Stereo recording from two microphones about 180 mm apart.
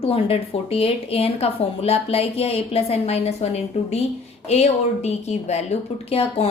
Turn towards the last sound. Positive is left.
turn(degrees=35)  # may be behind; listen again after turning